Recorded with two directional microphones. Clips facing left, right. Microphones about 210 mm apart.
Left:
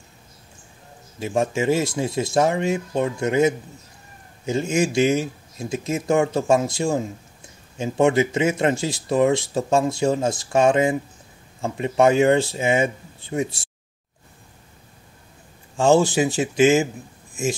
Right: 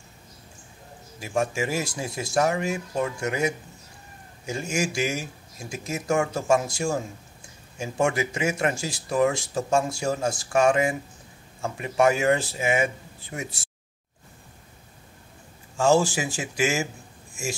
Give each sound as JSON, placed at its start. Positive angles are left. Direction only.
{"t": 1.2, "sound": "speech", "side_deg": 25}
{"t": 15.8, "sound": "speech", "side_deg": 25}